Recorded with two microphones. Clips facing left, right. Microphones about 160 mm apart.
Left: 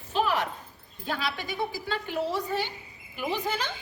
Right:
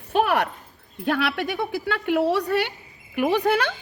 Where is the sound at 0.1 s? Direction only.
60° right (ahead or behind).